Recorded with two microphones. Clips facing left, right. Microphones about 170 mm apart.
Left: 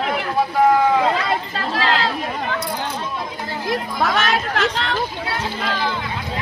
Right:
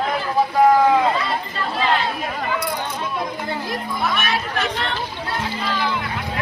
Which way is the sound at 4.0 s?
90° left.